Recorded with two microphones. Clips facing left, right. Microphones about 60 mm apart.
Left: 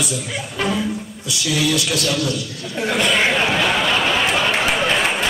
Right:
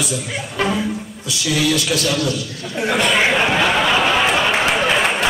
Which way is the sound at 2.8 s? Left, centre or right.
Centre.